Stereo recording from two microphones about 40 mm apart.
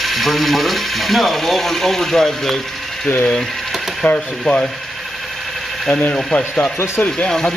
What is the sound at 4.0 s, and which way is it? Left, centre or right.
Speech, left.